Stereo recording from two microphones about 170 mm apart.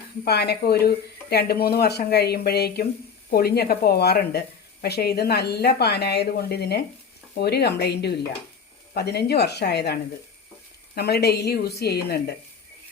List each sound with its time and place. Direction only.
0.3 s speech: 70° left (ahead or behind)